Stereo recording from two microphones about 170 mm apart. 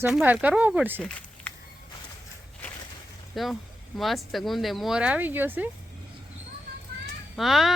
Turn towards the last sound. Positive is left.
turn(degrees=0)  # may be behind; listen again after turning